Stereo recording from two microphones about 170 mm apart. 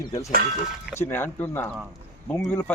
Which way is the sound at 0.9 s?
10° left (ahead or behind).